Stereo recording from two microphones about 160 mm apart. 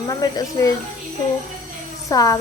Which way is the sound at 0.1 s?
25° left (ahead or behind).